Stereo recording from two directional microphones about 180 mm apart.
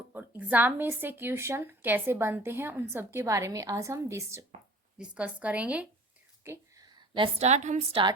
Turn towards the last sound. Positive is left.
turn(degrees=-40)  # may be behind; listen again after turning